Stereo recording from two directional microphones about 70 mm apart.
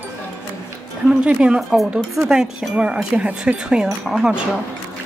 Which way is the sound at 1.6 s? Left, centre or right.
Centre.